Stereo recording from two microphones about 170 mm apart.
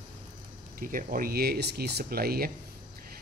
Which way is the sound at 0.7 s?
55° right (ahead or behind).